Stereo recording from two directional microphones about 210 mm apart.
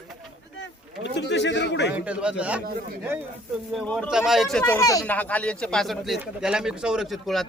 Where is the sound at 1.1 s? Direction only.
55° left (ahead or behind).